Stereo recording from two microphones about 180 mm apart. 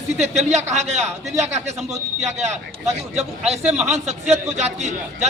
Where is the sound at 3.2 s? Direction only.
35° right (ahead or behind).